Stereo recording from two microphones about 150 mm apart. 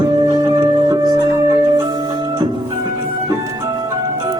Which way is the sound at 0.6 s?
25° right (ahead or behind).